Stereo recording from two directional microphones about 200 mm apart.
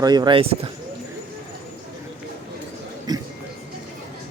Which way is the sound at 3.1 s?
20° right (ahead or behind).